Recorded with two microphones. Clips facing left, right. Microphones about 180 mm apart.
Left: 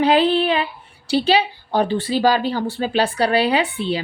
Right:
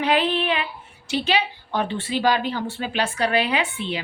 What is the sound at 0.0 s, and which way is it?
Speech, 35° left (ahead or behind).